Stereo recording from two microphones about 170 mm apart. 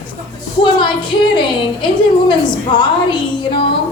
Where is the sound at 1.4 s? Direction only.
25° left (ahead or behind).